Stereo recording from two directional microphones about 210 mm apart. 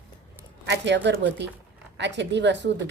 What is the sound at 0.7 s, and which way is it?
A woman's voice, 55° right (ahead or behind).